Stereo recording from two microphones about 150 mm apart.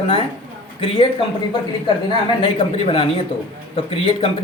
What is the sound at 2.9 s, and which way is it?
Speech, 40° left (ahead or behind).